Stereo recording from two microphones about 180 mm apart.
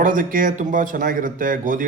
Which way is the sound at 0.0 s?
50° right (ahead or behind).